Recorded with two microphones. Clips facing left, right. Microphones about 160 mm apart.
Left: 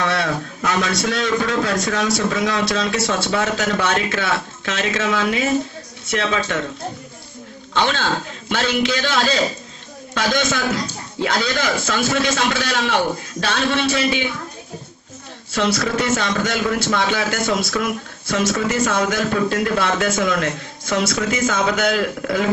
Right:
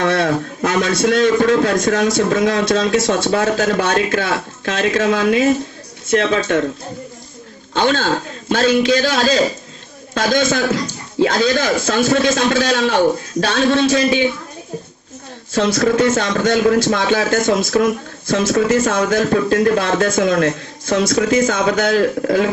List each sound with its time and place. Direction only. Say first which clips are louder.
0.0 s a man's voice: right 5 dB; 45° right (ahead or behind)
7.7 s a man's voice: right 4 dB; 40° right (ahead or behind)
15.5 s a man's voice: right 5 dB; 45° right (ahead or behind)